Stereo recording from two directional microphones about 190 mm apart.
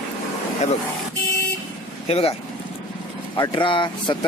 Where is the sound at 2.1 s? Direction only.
30° left (ahead or behind).